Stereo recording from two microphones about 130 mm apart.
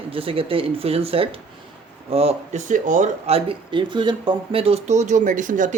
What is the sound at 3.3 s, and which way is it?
Speech, 45° right (ahead or behind).